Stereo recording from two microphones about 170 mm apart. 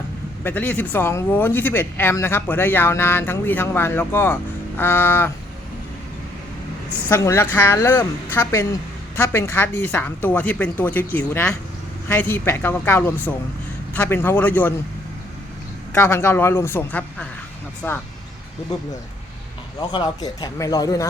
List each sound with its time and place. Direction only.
0.4 s speech: 10° left (ahead or behind)
7.1 s speech: 15° left (ahead or behind)
16.0 s speech: 15° left (ahead or behind)
19.9 s speech: 25° left (ahead or behind)